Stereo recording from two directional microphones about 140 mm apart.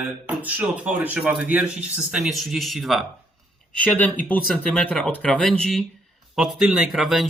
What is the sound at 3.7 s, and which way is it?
Speech, 10° left (ahead or behind).